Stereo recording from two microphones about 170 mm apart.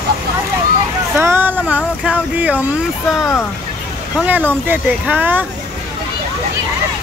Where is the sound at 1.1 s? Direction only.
10° right (ahead or behind).